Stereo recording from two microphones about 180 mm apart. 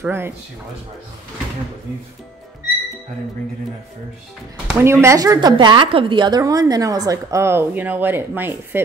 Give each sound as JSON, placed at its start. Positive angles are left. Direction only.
{"t": 0.0, "sound": "speech", "side_deg": -10}
{"t": 4.6, "sound": "a woman's voice", "side_deg": -15}